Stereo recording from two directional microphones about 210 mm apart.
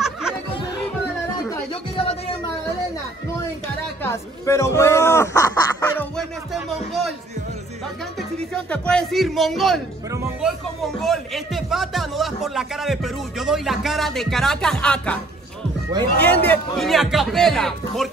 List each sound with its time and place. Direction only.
0.0 s music: centre (ahead or behind)
1.5 s music: 25° left (ahead or behind)
4.0 s speech: 10° left (ahead or behind)
8.6 s speech: 5° left (ahead or behind)
11.0 s speech: centre (ahead or behind)
16.2 s speech: 5° left (ahead or behind)